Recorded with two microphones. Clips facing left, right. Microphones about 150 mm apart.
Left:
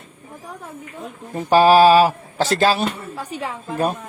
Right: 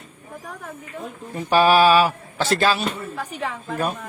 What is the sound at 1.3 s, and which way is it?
Speech, 40° left (ahead or behind).